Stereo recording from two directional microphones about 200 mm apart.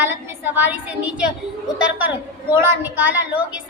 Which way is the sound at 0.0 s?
10° right (ahead or behind).